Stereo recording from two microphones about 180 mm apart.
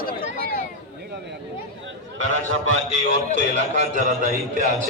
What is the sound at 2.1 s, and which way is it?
Speech, 90° right.